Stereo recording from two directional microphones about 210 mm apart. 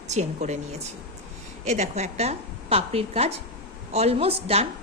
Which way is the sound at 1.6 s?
30° right (ahead or behind).